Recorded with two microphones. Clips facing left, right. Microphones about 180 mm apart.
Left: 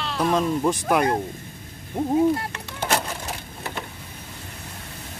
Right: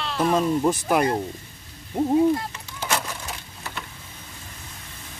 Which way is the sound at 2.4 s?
60° left (ahead or behind).